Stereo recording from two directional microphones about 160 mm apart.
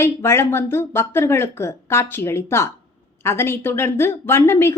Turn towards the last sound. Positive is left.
turn(degrees=15)  # may be behind; listen again after turning